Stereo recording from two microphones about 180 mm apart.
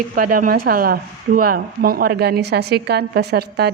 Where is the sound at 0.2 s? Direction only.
50° right (ahead or behind).